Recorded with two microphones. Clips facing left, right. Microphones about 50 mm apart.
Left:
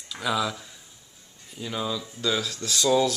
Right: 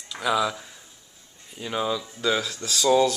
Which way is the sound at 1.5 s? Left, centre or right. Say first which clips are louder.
Right 3 dB; right.